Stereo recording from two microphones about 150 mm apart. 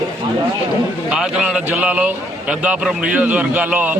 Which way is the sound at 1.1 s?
5° right (ahead or behind).